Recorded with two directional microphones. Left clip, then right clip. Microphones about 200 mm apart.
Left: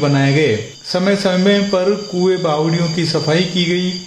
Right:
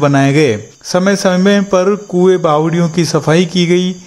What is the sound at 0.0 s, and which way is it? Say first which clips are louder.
Speech: right 4 dB; 45° right (ahead or behind).